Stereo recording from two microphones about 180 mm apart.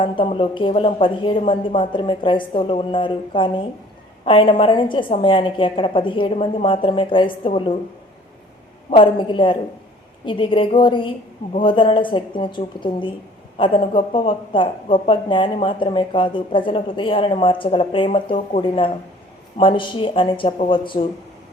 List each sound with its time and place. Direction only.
0.0 s speech: 30° left (ahead or behind)
8.9 s speech: 25° left (ahead or behind)